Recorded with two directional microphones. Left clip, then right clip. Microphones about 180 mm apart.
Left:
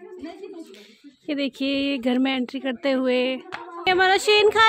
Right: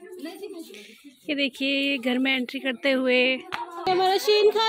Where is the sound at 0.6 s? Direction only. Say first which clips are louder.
Right 2 dB; 20° left (ahead or behind).